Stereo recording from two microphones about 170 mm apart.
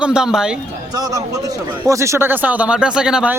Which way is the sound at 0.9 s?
20° right (ahead or behind).